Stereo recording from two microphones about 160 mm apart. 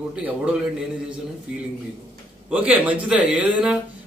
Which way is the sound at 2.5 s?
10° right (ahead or behind).